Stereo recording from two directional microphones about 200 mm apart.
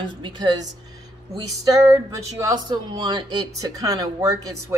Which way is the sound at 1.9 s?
15° right (ahead or behind).